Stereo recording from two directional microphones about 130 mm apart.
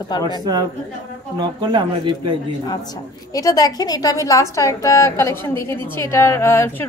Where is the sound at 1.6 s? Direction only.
35° right (ahead or behind).